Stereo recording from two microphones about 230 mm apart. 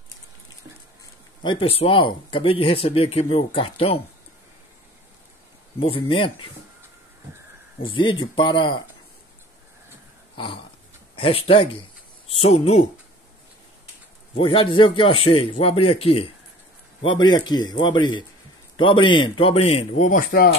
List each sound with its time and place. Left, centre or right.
1.4 s speech: left
5.8 s speech: left
7.9 s speech: left
10.3 s a sound: left
11.1 s speech: left
14.3 s a man's voice: left